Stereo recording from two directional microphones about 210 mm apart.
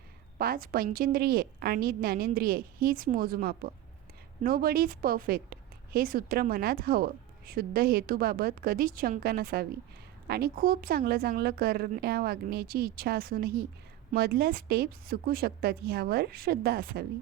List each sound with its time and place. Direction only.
0.3 s speech: 45° right (ahead or behind)